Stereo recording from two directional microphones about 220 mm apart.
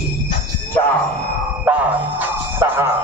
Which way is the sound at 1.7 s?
5° right (ahead or behind).